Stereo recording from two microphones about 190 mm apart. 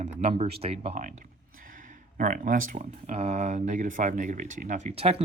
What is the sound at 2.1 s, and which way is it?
Speech, 45° right (ahead or behind).